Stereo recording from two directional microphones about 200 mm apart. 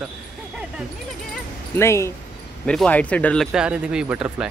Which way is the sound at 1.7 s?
15° left (ahead or behind).